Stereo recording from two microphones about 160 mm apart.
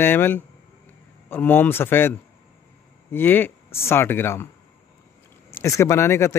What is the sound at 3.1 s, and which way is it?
Speech, 10° left (ahead or behind).